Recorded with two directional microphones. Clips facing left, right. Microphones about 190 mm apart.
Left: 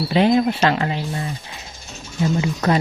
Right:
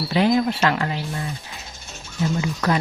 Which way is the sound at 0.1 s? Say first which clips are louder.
Left 2 dB; 20° left (ahead or behind).